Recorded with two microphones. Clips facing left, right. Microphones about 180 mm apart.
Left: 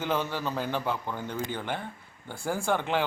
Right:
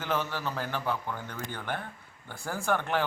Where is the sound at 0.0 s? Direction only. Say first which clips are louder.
Left 2 dB; 15° left (ahead or behind).